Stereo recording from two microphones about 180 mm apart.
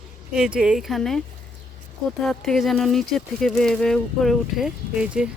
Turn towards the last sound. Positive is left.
turn(degrees=-5)  # may be behind; listen again after turning